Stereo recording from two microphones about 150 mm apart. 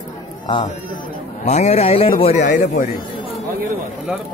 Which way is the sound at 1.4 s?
45° left (ahead or behind).